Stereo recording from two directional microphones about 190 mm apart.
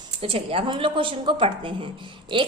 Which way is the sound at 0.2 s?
30° right (ahead or behind).